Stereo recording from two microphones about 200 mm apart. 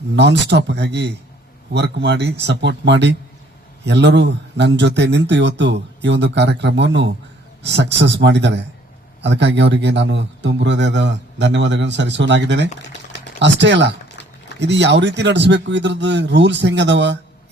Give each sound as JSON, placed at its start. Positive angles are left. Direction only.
{"t": 0.2, "sound": "a man's voice", "side_deg": -60}